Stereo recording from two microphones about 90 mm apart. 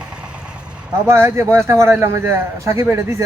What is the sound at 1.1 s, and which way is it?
A man's voice, 30° right (ahead or behind).